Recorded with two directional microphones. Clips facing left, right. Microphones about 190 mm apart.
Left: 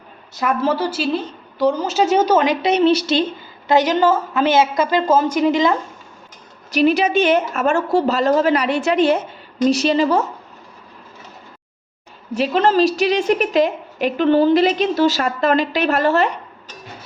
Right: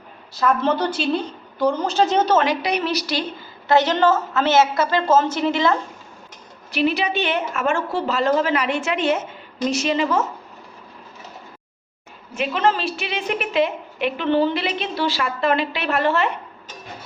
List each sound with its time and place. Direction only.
0.3 s a woman's voice: 10° left (ahead or behind)
3.7 s a woman's voice: 10° left (ahead or behind)
6.7 s a woman's voice: 45° left (ahead or behind)
12.3 s a woman's voice: 40° left (ahead or behind)